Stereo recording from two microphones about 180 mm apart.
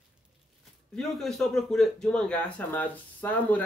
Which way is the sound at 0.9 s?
Centre (ahead or behind).